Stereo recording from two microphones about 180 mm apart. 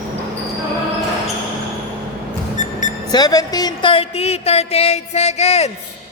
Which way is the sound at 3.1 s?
20° left (ahead or behind).